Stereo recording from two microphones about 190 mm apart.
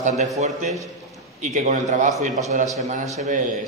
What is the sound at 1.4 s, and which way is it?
A man's voice, 40° right (ahead or behind).